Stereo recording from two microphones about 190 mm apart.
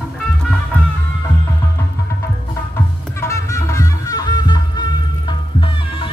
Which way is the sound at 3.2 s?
15° left (ahead or behind).